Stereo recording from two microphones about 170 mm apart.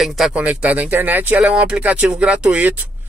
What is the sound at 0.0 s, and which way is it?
Speech, centre (ahead or behind).